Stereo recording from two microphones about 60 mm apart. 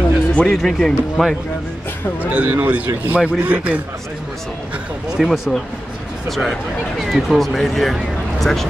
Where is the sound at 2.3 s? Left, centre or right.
Right.